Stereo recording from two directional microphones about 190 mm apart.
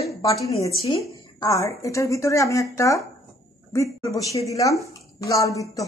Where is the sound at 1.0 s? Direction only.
15° left (ahead or behind).